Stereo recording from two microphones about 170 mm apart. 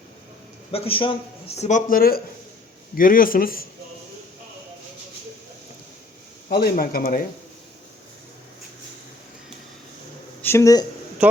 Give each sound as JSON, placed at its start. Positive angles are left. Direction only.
{"t": 0.7, "sound": "a man's voice", "side_deg": 35}
{"t": 6.5, "sound": "a man's voice", "side_deg": 65}
{"t": 10.4, "sound": "speech", "side_deg": 15}
{"t": 11.2, "sound": "speech", "side_deg": -5}